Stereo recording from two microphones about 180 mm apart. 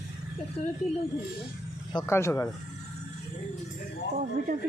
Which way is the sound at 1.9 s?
15° left (ahead or behind).